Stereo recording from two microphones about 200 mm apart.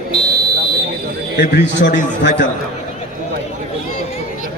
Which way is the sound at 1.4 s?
60° left (ahead or behind).